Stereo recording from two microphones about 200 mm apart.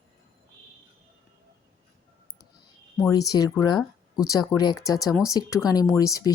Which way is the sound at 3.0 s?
15° left (ahead or behind).